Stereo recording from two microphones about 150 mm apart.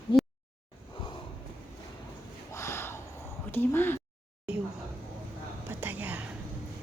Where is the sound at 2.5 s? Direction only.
20° left (ahead or behind).